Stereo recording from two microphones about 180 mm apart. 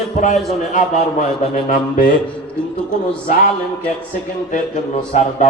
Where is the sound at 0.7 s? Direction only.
50° left (ahead or behind).